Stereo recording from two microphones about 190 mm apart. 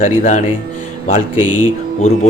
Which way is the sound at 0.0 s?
40° left (ahead or behind).